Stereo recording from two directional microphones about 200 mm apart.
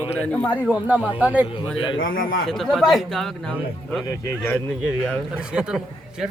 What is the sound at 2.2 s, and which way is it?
Speech, 80° left.